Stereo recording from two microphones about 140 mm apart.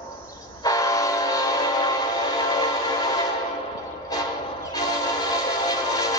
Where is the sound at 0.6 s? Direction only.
25° left (ahead or behind).